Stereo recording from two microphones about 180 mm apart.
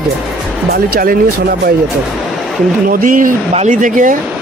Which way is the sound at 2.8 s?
50° right (ahead or behind).